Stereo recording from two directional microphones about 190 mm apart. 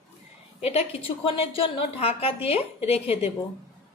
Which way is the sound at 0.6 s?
35° left (ahead or behind).